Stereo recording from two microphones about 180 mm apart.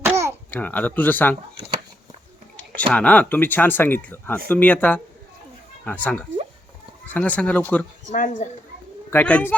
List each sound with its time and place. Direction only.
0.0 s babbling: 15° right (ahead or behind)
0.5 s speech: 10° left (ahead or behind)
2.9 s speech: 5° left (ahead or behind)
8.1 s speech: 45° left (ahead or behind)
9.0 s speech: 10° left (ahead or behind)